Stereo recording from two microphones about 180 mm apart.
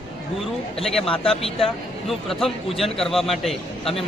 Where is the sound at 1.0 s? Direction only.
30° left (ahead or behind).